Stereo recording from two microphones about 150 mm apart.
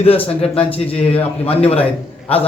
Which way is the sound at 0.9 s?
40° left (ahead or behind).